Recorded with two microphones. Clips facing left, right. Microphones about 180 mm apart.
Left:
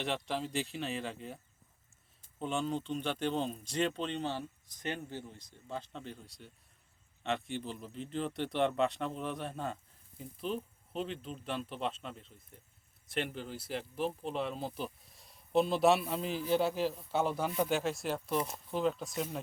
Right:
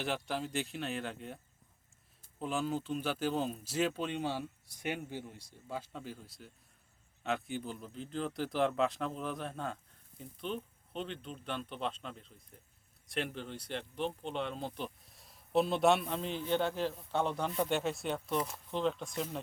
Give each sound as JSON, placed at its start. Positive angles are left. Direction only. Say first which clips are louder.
{"t": 0.0, "sound": "speech", "louder": "left 1 dB", "side_deg": 0}
{"t": 2.4, "sound": "speech", "louder": "even", "side_deg": -5}
{"t": 18.3, "sound": "speech", "louder": "left 1 dB", "side_deg": 20}
{"t": 18.7, "sound": "speech", "louder": "left 1 dB", "side_deg": 5}